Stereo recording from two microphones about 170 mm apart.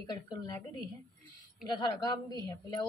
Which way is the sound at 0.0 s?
25° left (ahead or behind).